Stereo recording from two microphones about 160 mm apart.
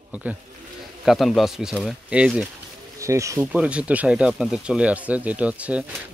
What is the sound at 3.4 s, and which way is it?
Speech, 5° right (ahead or behind).